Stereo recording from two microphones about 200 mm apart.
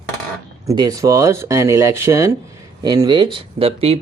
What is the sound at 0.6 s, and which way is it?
Speech, 20° right (ahead or behind).